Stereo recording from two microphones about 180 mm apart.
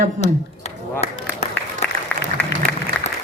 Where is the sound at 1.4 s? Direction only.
40° left (ahead or behind).